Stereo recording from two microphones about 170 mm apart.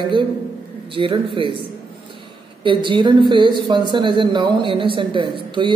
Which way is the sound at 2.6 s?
30° right (ahead or behind).